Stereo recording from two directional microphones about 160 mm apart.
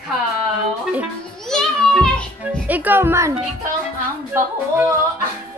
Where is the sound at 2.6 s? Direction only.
10° right (ahead or behind).